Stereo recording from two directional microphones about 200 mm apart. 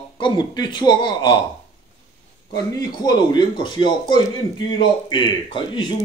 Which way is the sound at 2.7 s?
20° left (ahead or behind).